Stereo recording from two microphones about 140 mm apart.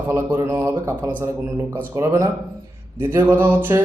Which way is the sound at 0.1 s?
15° right (ahead or behind).